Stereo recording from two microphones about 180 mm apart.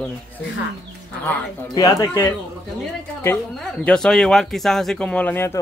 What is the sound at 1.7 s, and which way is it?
Speech, 15° left (ahead or behind).